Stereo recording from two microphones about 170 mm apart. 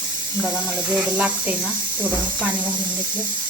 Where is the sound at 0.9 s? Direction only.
5° right (ahead or behind).